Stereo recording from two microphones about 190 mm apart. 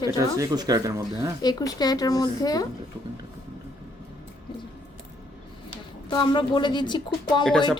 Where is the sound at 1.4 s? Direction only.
20° left (ahead or behind).